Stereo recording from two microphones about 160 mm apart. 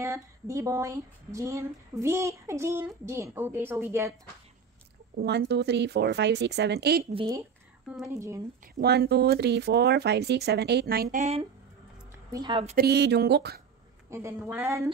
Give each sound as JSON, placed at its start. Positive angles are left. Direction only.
{"t": 0.0, "sound": "speech", "side_deg": -20}
{"t": 5.1, "sound": "speech", "side_deg": -90}
{"t": 8.1, "sound": "speech", "side_deg": -15}
{"t": 8.8, "sound": "speech", "side_deg": -90}
{"t": 11.1, "sound": "speech", "side_deg": -40}
{"t": 12.3, "sound": "a woman's voice", "side_deg": -25}
{"t": 12.7, "sound": "speech", "side_deg": -90}
{"t": 14.1, "sound": "speech", "side_deg": -15}